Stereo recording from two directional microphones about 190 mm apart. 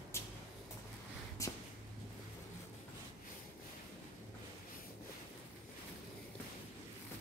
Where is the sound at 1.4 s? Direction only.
15° left (ahead or behind).